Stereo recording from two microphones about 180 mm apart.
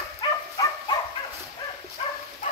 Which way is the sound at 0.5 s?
20° left (ahead or behind).